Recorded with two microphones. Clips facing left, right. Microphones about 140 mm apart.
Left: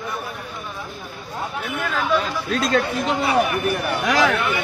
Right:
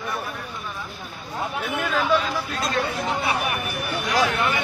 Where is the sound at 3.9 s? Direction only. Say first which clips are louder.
Left 2 dB; 90° left.